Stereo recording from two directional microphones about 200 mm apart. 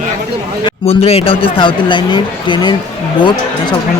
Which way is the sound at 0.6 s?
30° left (ahead or behind).